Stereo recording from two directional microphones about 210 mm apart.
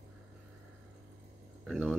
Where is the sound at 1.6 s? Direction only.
Centre (ahead or behind).